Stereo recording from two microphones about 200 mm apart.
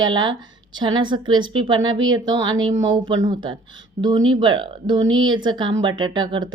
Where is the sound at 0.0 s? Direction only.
20° right (ahead or behind).